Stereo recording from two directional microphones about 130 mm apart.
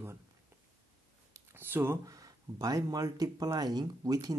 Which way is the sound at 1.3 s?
15° right (ahead or behind).